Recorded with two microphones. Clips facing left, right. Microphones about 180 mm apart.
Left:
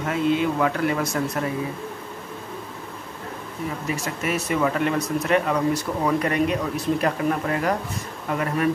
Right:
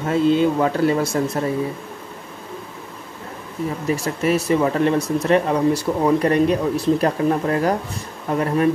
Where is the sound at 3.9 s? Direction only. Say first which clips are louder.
Right 8 dB; 35° right (ahead or behind).